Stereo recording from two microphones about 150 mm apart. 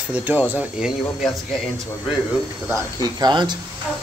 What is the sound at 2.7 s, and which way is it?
Speech, 30° right (ahead or behind).